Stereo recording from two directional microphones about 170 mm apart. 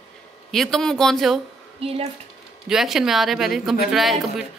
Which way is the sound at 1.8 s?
35° right (ahead or behind).